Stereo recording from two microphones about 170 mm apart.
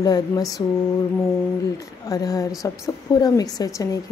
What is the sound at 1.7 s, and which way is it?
A woman's voice, 20° left (ahead or behind).